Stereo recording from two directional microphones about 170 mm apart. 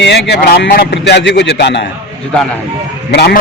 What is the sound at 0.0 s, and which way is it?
Speech, 80° left.